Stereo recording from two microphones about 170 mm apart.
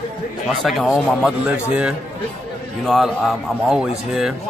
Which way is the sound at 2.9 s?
Centre (ahead or behind).